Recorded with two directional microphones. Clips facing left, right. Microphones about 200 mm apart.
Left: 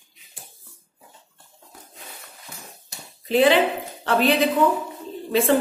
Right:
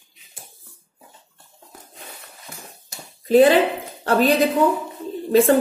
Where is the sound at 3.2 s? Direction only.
45° right (ahead or behind).